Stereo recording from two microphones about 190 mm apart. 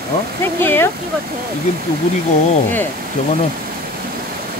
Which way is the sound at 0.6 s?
10° left (ahead or behind).